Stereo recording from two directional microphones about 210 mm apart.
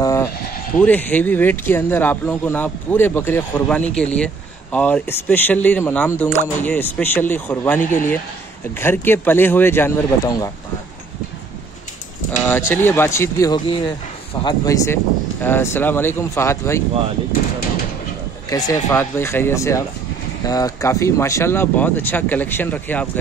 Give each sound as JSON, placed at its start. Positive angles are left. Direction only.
{"t": 0.0, "sound": "sheep", "side_deg": 15}
{"t": 0.7, "sound": "speech", "side_deg": 10}
{"t": 12.3, "sound": "speech", "side_deg": 10}
{"t": 18.5, "sound": "speech", "side_deg": 15}